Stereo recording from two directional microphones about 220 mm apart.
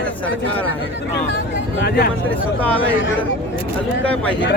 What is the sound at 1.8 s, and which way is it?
Speech, 45° left (ahead or behind).